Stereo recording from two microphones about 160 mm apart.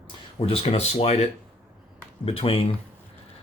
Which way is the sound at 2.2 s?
35° left (ahead or behind).